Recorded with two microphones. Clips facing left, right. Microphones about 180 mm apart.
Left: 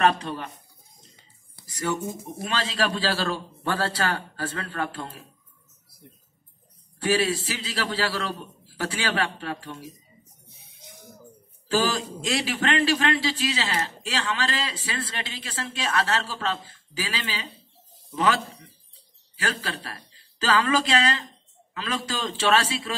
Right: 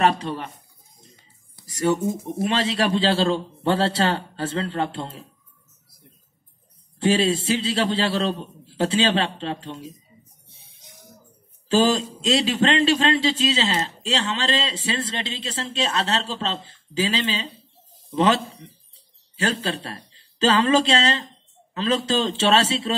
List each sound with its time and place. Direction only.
0.0 s a man's voice: 25° right (ahead or behind)
1.8 s a man's voice: 25° right (ahead or behind)
7.0 s a man's voice: 25° right (ahead or behind)
10.4 s music: 30° right (ahead or behind)
11.7 s a man's voice: 20° right (ahead or behind)
19.3 s a man's voice: 25° right (ahead or behind)